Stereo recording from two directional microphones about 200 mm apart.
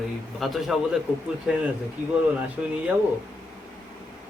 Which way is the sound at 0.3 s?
Centre (ahead or behind).